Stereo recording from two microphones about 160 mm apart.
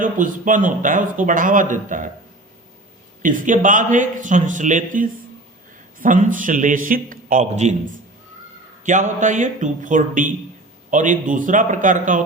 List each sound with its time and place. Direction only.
0.0 s speech: 55° right (ahead or behind)
3.2 s a man's voice: 55° right (ahead or behind)
8.8 s a man's voice: 50° right (ahead or behind)